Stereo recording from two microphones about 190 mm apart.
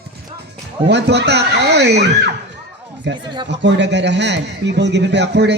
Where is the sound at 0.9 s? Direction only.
60° right (ahead or behind).